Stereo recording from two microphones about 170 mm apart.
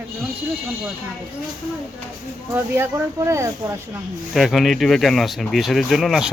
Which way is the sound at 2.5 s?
15° right (ahead or behind).